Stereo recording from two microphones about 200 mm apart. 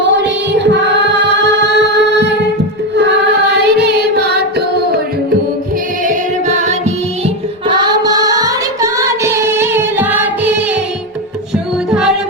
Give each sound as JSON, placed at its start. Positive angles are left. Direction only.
{"t": 0.0, "sound": "music", "side_deg": -60}
{"t": 3.5, "sound": "carnatic music", "side_deg": -55}
{"t": 6.1, "sound": "music", "side_deg": -35}
{"t": 7.7, "sound": "singing", "side_deg": -20}
{"t": 11.9, "sound": "music", "side_deg": 0}